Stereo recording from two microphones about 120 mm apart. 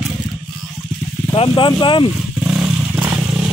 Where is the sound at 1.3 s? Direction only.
45° left (ahead or behind).